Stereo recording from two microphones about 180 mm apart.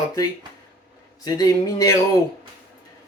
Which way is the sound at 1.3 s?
20° left (ahead or behind).